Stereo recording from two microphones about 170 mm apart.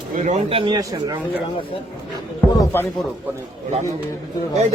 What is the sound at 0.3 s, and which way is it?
Speech, 45° right (ahead or behind).